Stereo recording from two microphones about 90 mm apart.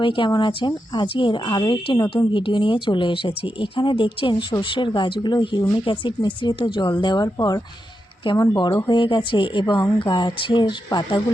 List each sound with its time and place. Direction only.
0.0 s speech: 70° left (ahead or behind)